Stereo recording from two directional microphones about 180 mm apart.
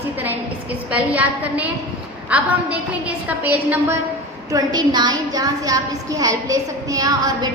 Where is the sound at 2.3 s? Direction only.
5° right (ahead or behind).